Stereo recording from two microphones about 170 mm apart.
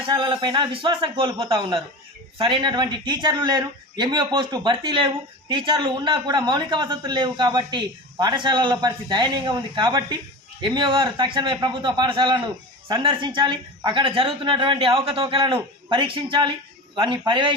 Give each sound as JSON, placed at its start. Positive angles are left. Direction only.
{"t": 0.0, "sound": "speech", "side_deg": -25}